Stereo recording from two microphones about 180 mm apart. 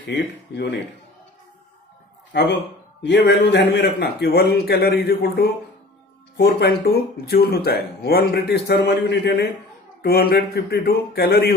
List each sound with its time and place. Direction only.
0.0 s speech: 70° left (ahead or behind)
3.0 s a man's voice: 70° left (ahead or behind)